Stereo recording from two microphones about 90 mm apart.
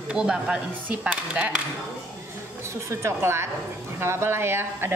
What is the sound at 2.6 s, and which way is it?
A woman's voice, 30° right (ahead or behind).